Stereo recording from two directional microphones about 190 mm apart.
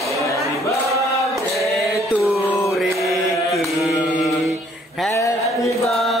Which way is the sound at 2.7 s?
Centre (ahead or behind).